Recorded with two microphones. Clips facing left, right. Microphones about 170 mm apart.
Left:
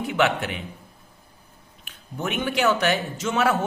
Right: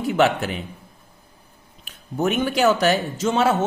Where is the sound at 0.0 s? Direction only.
40° right (ahead or behind).